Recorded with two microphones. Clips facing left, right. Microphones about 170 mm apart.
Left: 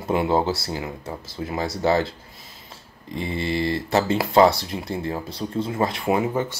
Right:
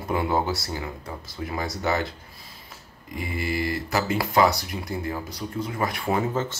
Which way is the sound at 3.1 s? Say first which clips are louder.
Left 3 dB; 30° left (ahead or behind).